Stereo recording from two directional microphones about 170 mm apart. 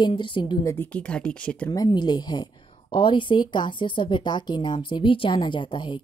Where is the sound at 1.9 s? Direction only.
25° left (ahead or behind).